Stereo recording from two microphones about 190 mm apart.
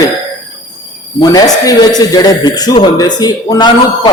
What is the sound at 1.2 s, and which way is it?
A man's voice, 20° left (ahead or behind).